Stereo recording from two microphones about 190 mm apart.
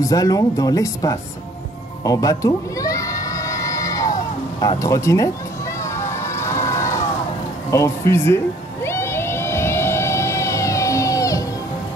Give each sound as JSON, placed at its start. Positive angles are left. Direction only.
{"t": 0.0, "sound": "speech", "side_deg": 20}
{"t": 2.0, "sound": "a sound", "side_deg": 20}
{"t": 7.7, "sound": "speech", "side_deg": 15}
{"t": 8.8, "sound": "vehicle", "side_deg": 15}